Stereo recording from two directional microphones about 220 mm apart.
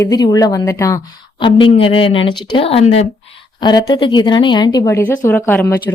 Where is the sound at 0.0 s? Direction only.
15° left (ahead or behind).